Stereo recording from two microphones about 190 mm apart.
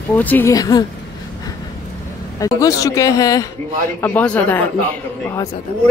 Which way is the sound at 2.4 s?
20° left (ahead or behind).